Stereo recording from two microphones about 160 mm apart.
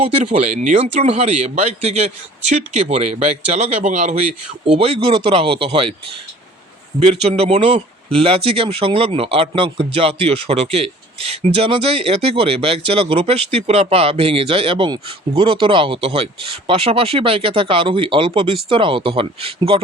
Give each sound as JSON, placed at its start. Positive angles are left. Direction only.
{"t": 0.3, "sound": "a man's voice", "side_deg": -50}
{"t": 7.0, "sound": "speech", "side_deg": -40}